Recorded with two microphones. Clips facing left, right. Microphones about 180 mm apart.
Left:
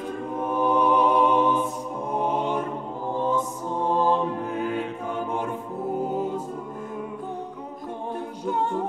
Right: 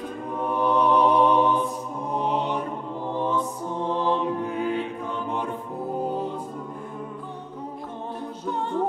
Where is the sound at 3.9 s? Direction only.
45° left (ahead or behind).